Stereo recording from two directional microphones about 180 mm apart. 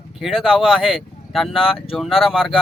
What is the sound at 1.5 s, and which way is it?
Speech, 30° left (ahead or behind).